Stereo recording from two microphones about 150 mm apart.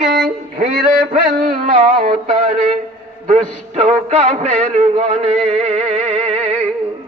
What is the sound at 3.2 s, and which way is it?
Music, 50° right (ahead or behind).